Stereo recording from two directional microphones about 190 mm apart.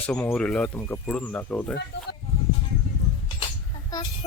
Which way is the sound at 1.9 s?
65° left (ahead or behind).